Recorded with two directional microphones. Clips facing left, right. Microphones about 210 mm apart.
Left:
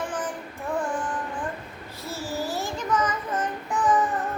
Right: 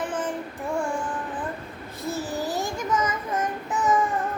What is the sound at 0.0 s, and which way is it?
Child singing, 20° right (ahead or behind).